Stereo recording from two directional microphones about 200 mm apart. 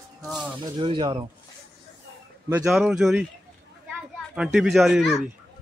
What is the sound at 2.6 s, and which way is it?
A child's voice, 5° right (ahead or behind).